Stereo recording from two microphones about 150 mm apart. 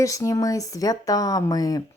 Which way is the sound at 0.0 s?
20° left (ahead or behind).